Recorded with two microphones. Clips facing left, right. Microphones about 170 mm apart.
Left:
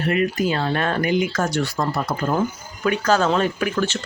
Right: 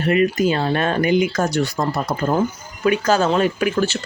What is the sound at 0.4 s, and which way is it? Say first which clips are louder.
Speech: right 3 dB; 25° right (ahead or behind).